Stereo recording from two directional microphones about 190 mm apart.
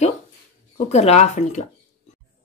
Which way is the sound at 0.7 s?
35° left (ahead or behind).